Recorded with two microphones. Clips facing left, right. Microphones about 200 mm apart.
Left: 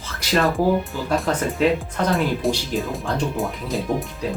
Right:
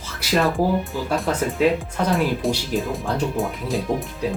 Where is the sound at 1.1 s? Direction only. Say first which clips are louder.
Left 1 dB; centre (ahead or behind).